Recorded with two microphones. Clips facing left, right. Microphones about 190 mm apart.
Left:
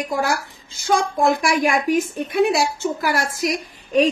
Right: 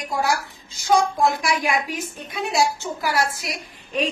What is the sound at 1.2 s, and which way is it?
A woman's voice, 50° left (ahead or behind).